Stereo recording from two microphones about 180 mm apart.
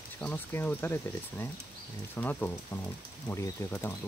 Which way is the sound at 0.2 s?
10° left (ahead or behind).